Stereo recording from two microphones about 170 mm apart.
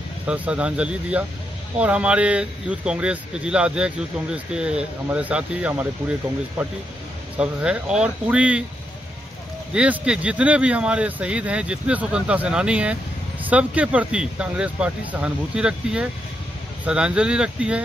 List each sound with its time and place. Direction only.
0.3 s speech: 5° right (ahead or behind)
7.3 s speech: 5° right (ahead or behind)
9.8 s speech: 5° right (ahead or behind)